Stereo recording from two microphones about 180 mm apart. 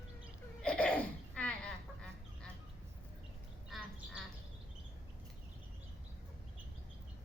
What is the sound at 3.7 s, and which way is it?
Squawk, centre (ahead or behind).